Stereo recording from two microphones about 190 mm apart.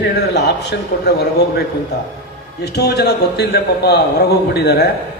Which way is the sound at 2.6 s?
60° left (ahead or behind).